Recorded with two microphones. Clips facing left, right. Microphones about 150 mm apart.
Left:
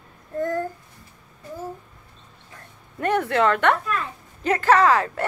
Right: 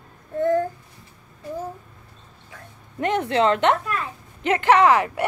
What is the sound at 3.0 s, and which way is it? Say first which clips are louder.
Speech: even; 20° right (ahead or behind).